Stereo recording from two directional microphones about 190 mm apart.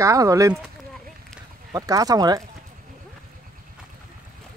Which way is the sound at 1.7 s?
20° right (ahead or behind).